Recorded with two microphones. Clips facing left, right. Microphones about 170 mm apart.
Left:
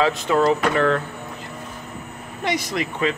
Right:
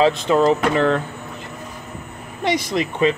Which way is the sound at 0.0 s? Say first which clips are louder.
Right 3 dB; 20° right (ahead or behind).